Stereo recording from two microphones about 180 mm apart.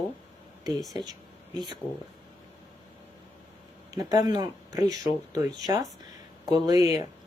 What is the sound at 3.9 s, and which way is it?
Speech, 20° right (ahead or behind).